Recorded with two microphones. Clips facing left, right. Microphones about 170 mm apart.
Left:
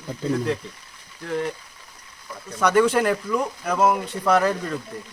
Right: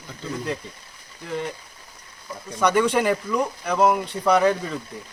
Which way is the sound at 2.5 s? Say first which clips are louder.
Left 1 dB; centre (ahead or behind).